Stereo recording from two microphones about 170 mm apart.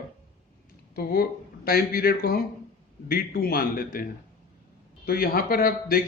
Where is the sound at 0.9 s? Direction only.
60° left (ahead or behind).